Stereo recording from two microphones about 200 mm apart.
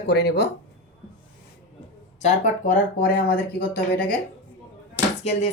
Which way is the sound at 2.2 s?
40° left (ahead or behind).